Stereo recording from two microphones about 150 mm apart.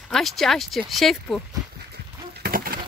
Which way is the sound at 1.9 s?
90° right.